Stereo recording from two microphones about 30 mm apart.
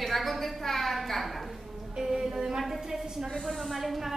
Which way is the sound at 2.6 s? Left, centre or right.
Centre.